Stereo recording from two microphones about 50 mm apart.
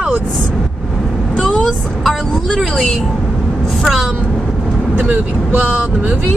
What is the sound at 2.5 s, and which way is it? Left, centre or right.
Speech, centre.